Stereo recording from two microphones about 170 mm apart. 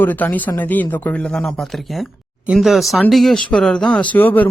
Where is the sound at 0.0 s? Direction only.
10° left (ahead or behind).